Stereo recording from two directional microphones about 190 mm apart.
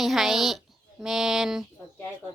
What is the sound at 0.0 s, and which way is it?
Speech, centre (ahead or behind).